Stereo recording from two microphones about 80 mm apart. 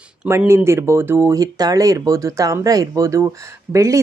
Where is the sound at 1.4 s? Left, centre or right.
Right.